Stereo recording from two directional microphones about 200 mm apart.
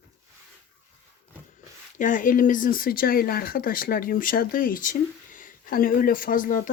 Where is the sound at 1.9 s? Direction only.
40° left (ahead or behind).